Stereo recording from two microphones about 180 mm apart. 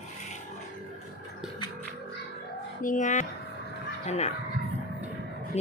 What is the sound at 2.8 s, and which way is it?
Speech, 45° left (ahead or behind).